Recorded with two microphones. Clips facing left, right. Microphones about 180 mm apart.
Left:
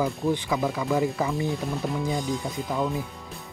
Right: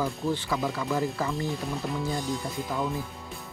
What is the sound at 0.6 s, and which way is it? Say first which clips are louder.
Speech: left 4 dB; 5° left (ahead or behind).